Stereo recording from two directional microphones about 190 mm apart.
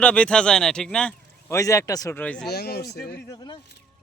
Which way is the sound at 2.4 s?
55° left (ahead or behind).